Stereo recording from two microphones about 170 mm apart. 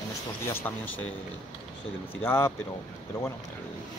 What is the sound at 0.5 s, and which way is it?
Speech, 10° left (ahead or behind).